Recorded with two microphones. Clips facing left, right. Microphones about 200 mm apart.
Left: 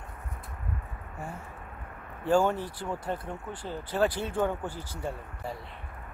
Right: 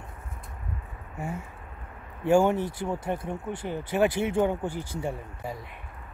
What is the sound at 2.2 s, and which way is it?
Speech, 20° right (ahead or behind).